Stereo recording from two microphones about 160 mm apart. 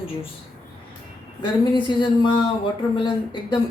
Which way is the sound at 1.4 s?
30° left (ahead or behind).